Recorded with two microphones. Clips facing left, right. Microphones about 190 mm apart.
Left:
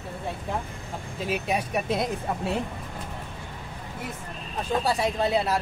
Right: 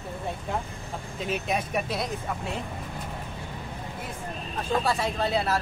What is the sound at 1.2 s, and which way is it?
Speech, 5° left (ahead or behind).